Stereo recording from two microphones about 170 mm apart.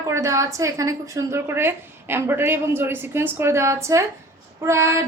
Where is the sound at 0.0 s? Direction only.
15° right (ahead or behind).